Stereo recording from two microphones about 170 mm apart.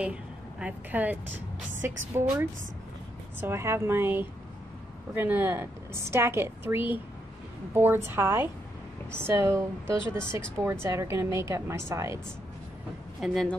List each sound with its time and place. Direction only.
0.0 s a woman's voice: 5° right (ahead or behind)
13.2 s speech: centre (ahead or behind)